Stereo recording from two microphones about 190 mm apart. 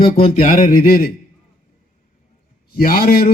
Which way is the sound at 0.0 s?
30° left (ahead or behind).